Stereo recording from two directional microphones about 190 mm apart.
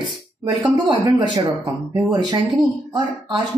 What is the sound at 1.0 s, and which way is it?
Speech, 15° right (ahead or behind).